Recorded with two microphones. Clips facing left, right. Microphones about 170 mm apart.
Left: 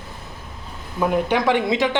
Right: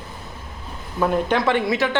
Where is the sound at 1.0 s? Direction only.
15° left (ahead or behind).